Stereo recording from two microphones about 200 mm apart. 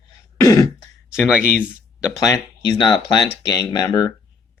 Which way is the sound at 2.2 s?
20° left (ahead or behind).